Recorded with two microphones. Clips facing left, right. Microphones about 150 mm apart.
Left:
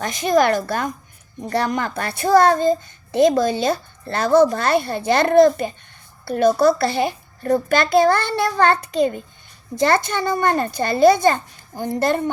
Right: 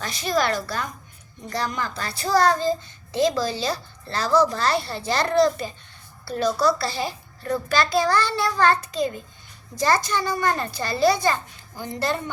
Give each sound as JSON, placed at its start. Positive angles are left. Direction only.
{"t": 0.0, "sound": "a child's voice", "side_deg": 45}